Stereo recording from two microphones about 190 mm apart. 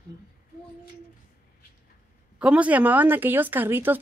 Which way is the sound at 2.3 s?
5° right (ahead or behind).